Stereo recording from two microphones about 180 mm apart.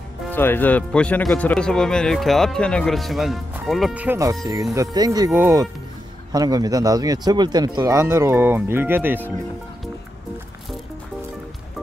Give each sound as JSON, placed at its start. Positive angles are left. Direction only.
{"t": 0.3, "sound": "speech", "side_deg": 10}